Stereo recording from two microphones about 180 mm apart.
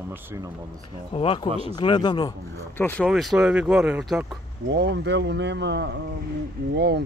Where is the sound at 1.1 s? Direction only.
30° left (ahead or behind).